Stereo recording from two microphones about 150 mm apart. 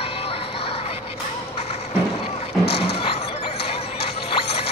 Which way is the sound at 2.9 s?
40° left (ahead or behind).